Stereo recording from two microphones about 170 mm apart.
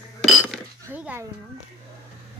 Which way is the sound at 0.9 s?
10° right (ahead or behind).